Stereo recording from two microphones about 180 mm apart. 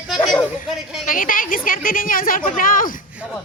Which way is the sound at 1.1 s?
50° left (ahead or behind).